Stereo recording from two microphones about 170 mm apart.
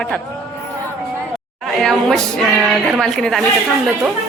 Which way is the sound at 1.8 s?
Centre (ahead or behind).